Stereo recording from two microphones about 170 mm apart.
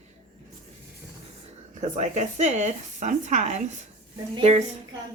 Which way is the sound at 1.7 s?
45° right (ahead or behind).